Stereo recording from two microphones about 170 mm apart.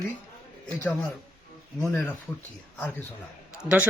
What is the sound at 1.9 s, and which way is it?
Speech, 15° left (ahead or behind).